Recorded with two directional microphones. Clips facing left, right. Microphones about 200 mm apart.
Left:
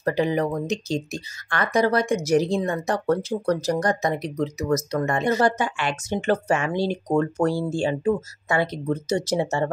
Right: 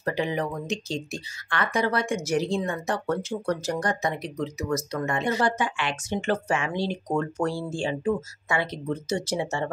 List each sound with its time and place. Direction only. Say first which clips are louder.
0.0 s speech: left 5 dB; 40° left (ahead or behind)